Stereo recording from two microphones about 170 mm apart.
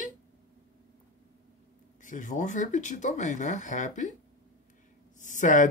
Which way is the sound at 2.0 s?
50° left (ahead or behind).